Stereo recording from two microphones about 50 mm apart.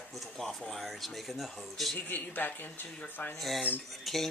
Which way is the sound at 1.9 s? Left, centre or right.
Left.